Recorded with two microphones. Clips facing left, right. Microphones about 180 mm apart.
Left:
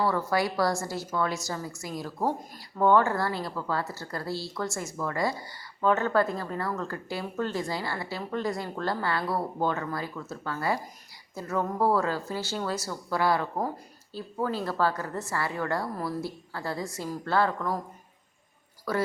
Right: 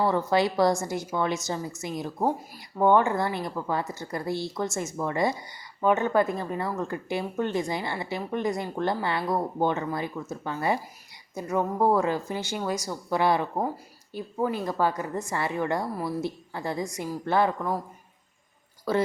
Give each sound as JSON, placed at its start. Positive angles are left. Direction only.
{"t": 0.0, "sound": "a woman's voice", "side_deg": -20}
{"t": 18.9, "sound": "speech", "side_deg": -25}